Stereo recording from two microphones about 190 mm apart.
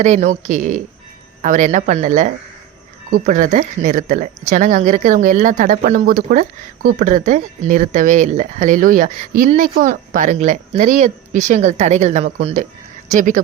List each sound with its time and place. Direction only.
0.0 s speech: 40° right (ahead or behind)
13.1 s speech: 45° right (ahead or behind)